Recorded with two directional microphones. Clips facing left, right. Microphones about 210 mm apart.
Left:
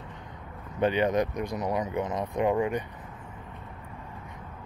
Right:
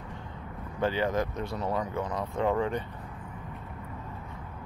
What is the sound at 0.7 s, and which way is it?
Speech, 20° left (ahead or behind).